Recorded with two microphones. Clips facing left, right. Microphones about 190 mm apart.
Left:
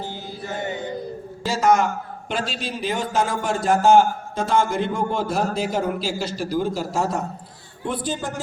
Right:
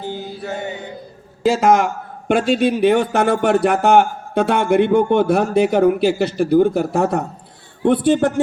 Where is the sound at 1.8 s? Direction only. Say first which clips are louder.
Right 2 dB; 55° right (ahead or behind).